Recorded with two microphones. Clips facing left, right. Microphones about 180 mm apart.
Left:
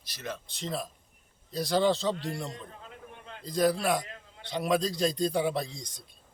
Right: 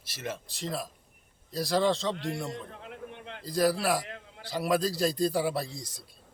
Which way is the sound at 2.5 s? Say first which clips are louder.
Right 4 dB; 65° right (ahead or behind).